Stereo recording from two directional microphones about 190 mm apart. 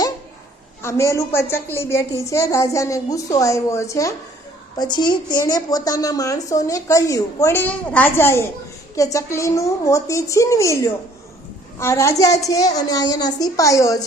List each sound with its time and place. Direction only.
0.8 s a woman's voice: 15° left (ahead or behind)